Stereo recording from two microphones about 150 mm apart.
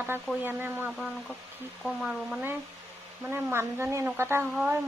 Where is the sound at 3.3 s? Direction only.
15° right (ahead or behind).